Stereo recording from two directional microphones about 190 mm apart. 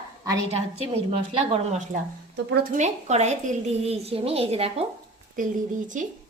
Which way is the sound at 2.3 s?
60° right (ahead or behind).